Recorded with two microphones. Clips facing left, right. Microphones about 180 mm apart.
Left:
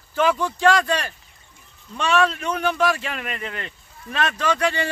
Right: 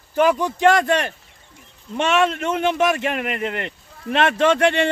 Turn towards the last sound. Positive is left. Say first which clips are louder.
# right 6 dB
turn(degrees=-60)  # may be behind; listen again after turning